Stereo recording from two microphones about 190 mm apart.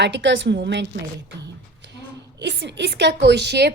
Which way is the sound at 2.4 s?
65° right (ahead or behind).